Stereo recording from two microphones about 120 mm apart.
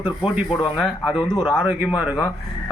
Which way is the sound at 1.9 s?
10° right (ahead or behind).